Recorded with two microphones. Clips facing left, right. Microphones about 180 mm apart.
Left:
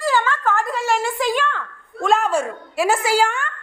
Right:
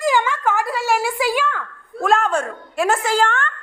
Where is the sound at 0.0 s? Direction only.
15° right (ahead or behind); by 3.5 s 10° left (ahead or behind).